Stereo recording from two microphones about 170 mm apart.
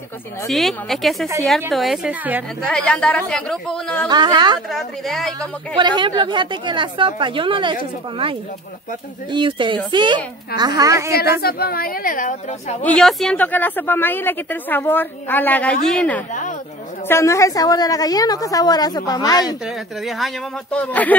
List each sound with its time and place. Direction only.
0.5 s speech: centre (ahead or behind)
2.6 s speech: 5° left (ahead or behind)
4.1 s a woman's voice: 25° right (ahead or behind)
4.6 s speech: centre (ahead or behind)
5.8 s a woman's voice: 25° right (ahead or behind)
11.4 s a woman's voice: 65° left (ahead or behind)
12.8 s speech: 5° left (ahead or behind)
17.1 s a woman's voice: 15° left (ahead or behind)
19.6 s speech: centre (ahead or behind)